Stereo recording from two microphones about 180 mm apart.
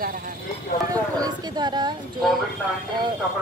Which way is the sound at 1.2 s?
25° right (ahead or behind).